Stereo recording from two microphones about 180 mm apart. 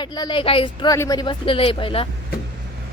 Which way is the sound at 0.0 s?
25° left (ahead or behind).